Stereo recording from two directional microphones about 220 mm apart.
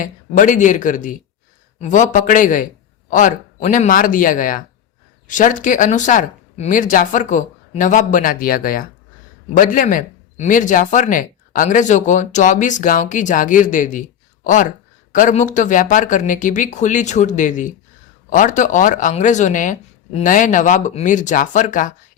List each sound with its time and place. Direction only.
0.0 s speech: 35° left (ahead or behind)